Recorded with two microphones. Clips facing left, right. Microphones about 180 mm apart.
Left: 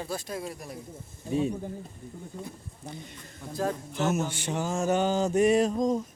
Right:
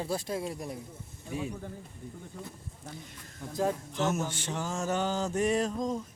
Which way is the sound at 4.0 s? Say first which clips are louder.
Left 3 dB; 5° left (ahead or behind).